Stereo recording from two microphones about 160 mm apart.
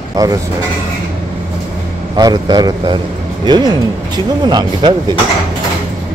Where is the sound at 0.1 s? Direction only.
20° right (ahead or behind).